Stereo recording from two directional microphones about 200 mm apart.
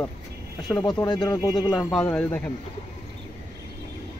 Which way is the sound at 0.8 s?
20° left (ahead or behind).